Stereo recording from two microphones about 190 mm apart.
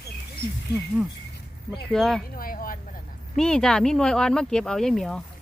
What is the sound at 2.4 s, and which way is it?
Speech, 50° left (ahead or behind).